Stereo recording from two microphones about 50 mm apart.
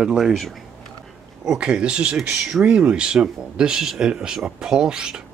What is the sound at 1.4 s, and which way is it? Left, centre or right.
Speech, centre.